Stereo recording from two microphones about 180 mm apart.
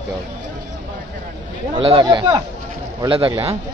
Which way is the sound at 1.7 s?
30° right (ahead or behind).